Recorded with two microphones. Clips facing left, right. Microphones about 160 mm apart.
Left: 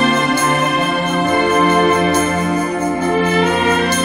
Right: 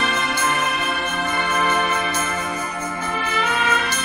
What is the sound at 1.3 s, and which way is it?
Music, 40° left (ahead or behind).